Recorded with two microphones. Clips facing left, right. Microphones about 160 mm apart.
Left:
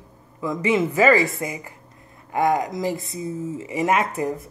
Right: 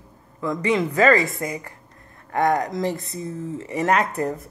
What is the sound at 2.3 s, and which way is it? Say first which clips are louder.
Speech: even; 5° left (ahead or behind).